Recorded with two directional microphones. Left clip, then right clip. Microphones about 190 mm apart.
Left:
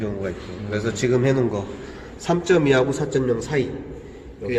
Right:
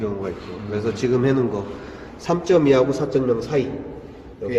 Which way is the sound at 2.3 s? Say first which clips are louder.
Right 2 dB; 15° left (ahead or behind).